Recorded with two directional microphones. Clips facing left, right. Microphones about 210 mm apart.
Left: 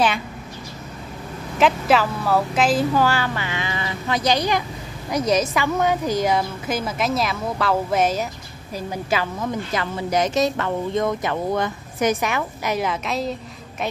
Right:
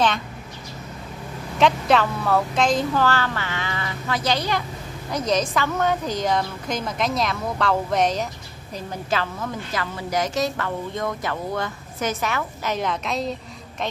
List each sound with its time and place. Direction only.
1.6 s a woman's voice: 5° left (ahead or behind)